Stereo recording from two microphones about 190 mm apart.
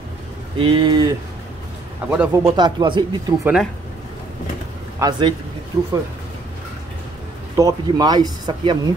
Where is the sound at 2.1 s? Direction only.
10° right (ahead or behind).